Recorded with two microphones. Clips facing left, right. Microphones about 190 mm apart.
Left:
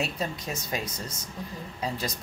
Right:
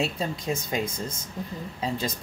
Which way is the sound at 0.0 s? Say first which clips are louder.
Right 3 dB; 25° right (ahead or behind).